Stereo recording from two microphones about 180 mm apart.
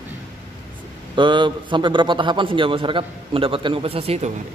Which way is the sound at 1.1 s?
25° right (ahead or behind).